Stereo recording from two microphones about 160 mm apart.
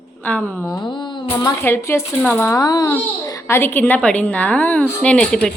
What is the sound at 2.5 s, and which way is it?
A child's voice, 25° left (ahead or behind).